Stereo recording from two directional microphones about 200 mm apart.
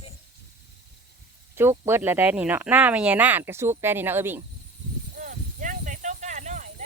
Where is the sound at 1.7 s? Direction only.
20° right (ahead or behind).